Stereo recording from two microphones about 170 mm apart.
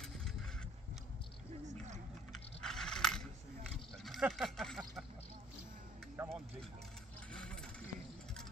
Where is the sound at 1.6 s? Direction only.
45° right (ahead or behind).